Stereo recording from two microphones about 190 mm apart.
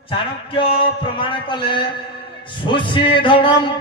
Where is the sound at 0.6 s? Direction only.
30° left (ahead or behind).